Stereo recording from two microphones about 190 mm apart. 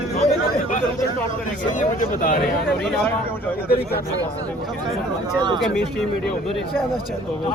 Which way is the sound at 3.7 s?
55° left (ahead or behind).